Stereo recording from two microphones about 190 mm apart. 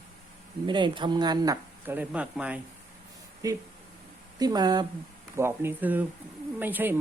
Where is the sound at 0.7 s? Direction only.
25° right (ahead or behind).